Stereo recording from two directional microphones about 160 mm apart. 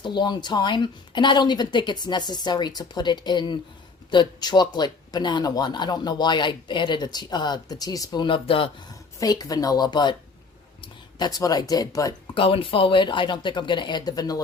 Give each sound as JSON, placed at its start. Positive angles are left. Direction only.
{"t": 0.0, "sound": "speech", "side_deg": 30}
{"t": 11.3, "sound": "speech", "side_deg": 20}
{"t": 12.3, "sound": "speech", "side_deg": 35}